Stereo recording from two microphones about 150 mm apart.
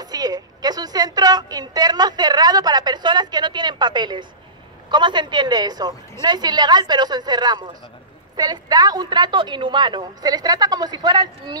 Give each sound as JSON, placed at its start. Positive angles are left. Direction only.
{"t": 0.0, "sound": "a woman's voice", "side_deg": -25}